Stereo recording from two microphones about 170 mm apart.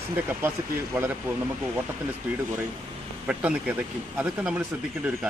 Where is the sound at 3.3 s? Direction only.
10° right (ahead or behind).